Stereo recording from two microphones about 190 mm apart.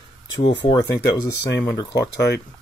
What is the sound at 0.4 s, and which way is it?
Speech, 20° left (ahead or behind).